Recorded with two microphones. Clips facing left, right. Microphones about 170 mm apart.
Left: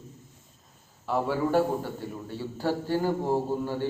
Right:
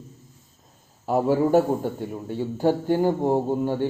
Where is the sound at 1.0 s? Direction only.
45° right (ahead or behind).